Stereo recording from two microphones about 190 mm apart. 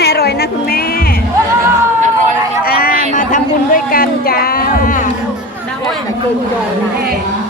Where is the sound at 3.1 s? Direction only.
40° left (ahead or behind).